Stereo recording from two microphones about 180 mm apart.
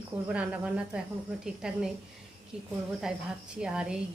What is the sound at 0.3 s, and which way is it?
A woman's voice, 5° right (ahead or behind).